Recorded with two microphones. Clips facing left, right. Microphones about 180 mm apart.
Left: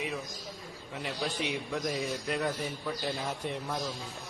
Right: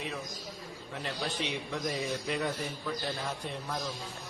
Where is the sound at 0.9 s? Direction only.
5° left (ahead or behind).